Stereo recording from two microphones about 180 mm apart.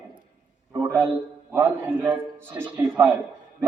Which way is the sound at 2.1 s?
10° right (ahead or behind).